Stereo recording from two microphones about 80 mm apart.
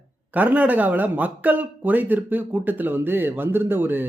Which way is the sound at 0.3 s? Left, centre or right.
Right.